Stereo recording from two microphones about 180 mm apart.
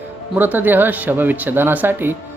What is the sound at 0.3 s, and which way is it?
Speech, 10° right (ahead or behind).